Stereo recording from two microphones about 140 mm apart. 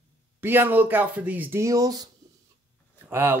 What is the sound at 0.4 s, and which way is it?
Speech, 15° right (ahead or behind).